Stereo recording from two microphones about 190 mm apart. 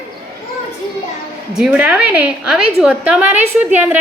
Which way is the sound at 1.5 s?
5° right (ahead or behind).